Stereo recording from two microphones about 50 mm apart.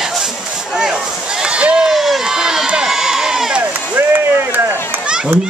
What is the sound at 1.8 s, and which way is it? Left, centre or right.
Crowd, centre.